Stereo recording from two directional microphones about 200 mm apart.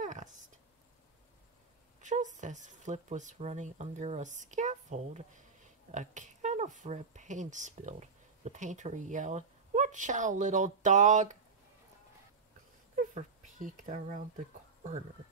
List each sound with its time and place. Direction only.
0.0 s a sound: 40° right (ahead or behind)
2.0 s speech: 35° right (ahead or behind)
13.1 s speech: 40° right (ahead or behind)